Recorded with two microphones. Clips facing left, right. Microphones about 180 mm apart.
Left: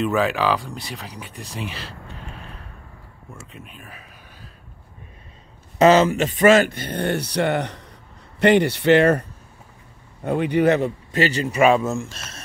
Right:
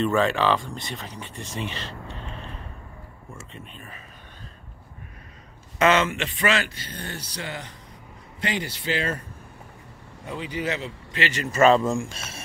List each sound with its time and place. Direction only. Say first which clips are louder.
0.0 s speech: left 1 dB; 5° left (ahead or behind)
3.3 s speech: left 1 dB; 5° left (ahead or behind)
5.8 s speech: left 7 dB; 35° left (ahead or behind); by 9.2 s 70° left (ahead or behind)
10.2 s speech: left 12 dB; 60° left (ahead or behind)
11.2 s speech: left 3 dB; 30° left (ahead or behind)
11.5 s speech: right 1 dB; 10° left (ahead or behind); by 12.4 s 10° right (ahead or behind)